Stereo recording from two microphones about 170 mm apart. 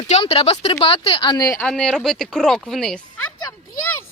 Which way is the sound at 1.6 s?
5° left (ahead or behind).